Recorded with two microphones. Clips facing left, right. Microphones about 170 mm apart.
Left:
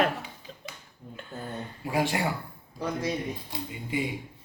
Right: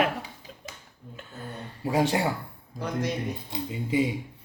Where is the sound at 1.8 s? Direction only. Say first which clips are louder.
Right 3 dB; 30° right (ahead or behind).